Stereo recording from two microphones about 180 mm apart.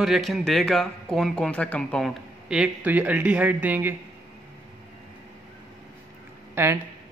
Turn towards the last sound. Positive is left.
turn(degrees=-15)  # may be behind; listen again after turning